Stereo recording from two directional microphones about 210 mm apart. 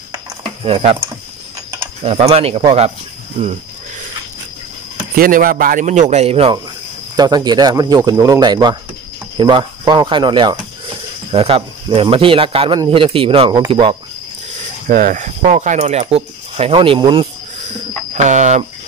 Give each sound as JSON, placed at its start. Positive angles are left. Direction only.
{"t": 0.1, "sound": "a sound", "side_deg": -25}
{"t": 2.0, "sound": "speech", "side_deg": -30}
{"t": 5.1, "sound": "speech", "side_deg": -40}
{"t": 14.9, "sound": "speech", "side_deg": -40}